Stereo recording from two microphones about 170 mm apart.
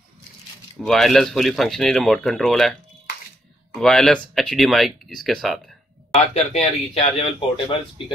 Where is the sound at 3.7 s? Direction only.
Centre (ahead or behind).